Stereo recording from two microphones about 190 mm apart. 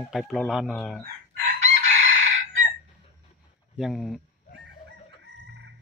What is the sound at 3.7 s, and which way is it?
Speech, centre (ahead or behind).